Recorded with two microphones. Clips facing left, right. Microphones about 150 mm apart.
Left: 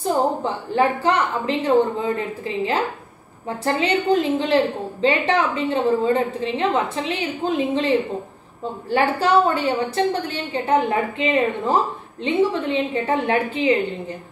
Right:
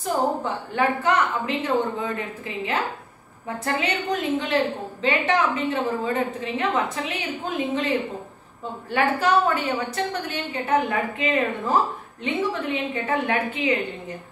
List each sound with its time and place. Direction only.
0.0 s a woman's voice: 30° left (ahead or behind)
8.9 s a woman's voice: 30° left (ahead or behind)